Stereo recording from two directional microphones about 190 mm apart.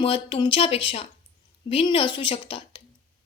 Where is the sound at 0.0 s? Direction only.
25° left (ahead or behind).